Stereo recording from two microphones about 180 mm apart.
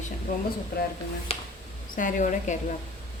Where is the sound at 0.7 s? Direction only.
65° left (ahead or behind).